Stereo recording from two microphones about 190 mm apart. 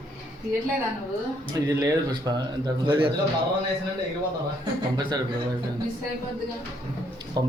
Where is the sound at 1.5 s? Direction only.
20° right (ahead or behind).